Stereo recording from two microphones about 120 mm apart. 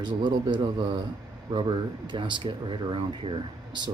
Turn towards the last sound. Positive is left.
turn(degrees=-40)  # may be behind; listen again after turning